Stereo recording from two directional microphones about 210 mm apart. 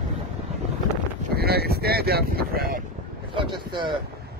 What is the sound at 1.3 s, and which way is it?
Speech, 50° right (ahead or behind).